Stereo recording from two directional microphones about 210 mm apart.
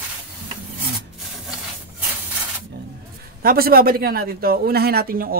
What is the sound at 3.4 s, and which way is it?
A man's voice, 45° right (ahead or behind).